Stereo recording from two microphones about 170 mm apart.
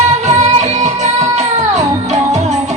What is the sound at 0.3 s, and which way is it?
Music, 40° right (ahead or behind).